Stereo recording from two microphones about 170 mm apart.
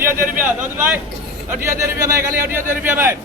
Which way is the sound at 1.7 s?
15° right (ahead or behind).